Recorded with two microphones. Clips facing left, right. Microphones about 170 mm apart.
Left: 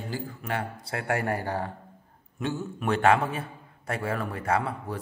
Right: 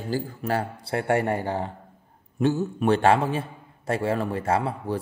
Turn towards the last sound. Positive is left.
turn(degrees=-30)  # may be behind; listen again after turning